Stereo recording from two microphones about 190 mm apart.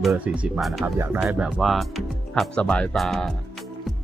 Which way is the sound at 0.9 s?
10° right (ahead or behind).